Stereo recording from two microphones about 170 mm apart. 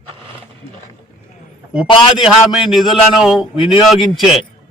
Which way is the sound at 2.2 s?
5° right (ahead or behind).